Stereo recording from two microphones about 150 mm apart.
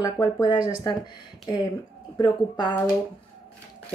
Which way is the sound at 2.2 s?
30° left (ahead or behind).